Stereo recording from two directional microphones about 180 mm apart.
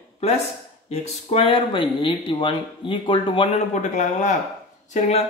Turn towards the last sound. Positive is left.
turn(degrees=35)  # may be behind; listen again after turning